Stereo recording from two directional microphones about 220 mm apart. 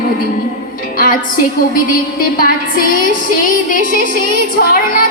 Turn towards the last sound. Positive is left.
turn(degrees=40)  # may be behind; listen again after turning